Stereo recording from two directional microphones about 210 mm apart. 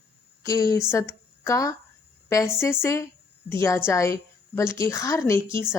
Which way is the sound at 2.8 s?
15° left (ahead or behind).